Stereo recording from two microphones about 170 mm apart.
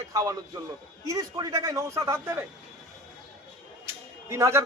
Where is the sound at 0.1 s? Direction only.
20° right (ahead or behind).